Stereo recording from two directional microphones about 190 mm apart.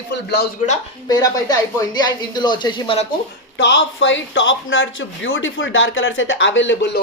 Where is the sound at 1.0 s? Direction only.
20° left (ahead or behind).